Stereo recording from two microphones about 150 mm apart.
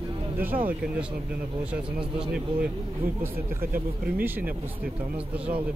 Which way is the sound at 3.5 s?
75° right (ahead or behind).